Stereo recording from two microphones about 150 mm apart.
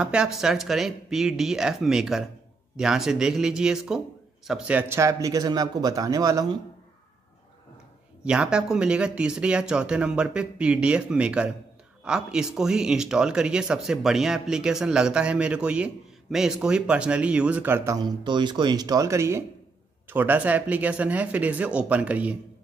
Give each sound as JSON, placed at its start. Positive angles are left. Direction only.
{"t": 0.0, "sound": "speech", "side_deg": -5}
{"t": 8.2, "sound": "speech", "side_deg": -5}